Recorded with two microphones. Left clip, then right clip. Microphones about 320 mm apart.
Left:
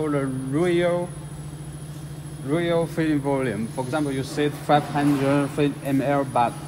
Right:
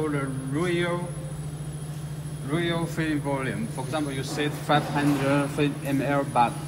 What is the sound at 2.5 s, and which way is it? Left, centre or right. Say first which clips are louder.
A man's voice: left 5 dB; left.